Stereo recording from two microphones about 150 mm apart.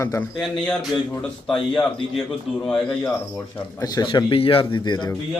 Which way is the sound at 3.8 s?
30° left (ahead or behind).